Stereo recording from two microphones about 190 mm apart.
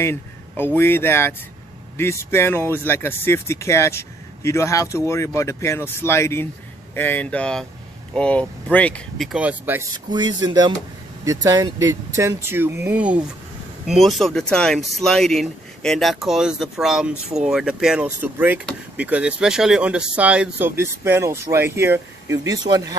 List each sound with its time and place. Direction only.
0.0 s speech: 10° left (ahead or behind); by 9.8 s 10° right (ahead or behind)
10.0 s speech: 20° right (ahead or behind)